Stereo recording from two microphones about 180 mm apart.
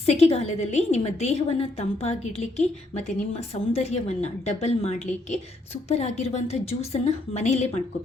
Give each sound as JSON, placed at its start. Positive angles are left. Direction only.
{"t": 0.0, "sound": "a woman's voice", "side_deg": 35}